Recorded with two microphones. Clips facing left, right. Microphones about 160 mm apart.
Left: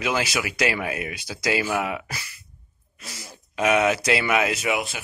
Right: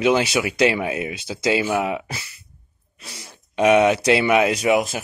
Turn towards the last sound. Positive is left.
turn(degrees=-40)  # may be behind; listen again after turning